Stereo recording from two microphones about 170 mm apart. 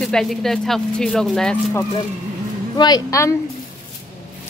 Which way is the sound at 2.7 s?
25° left (ahead or behind).